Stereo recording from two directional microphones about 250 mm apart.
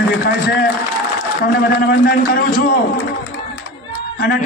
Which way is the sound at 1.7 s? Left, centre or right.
Left.